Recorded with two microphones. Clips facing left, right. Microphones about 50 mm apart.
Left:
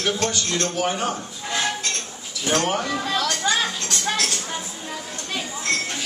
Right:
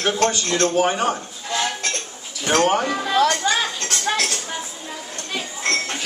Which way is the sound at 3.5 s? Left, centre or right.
Centre.